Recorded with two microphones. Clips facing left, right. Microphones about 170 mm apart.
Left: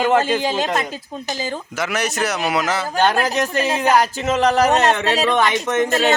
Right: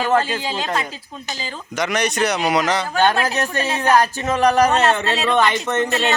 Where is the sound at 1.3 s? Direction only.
45° left (ahead or behind).